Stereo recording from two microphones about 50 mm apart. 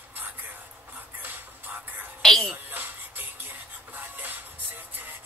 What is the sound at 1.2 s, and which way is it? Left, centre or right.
Music, right.